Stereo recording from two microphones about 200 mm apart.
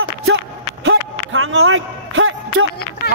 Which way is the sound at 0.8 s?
75° right (ahead or behind).